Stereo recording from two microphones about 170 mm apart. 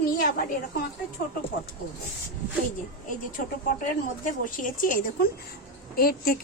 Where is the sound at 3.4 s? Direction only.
55° left (ahead or behind).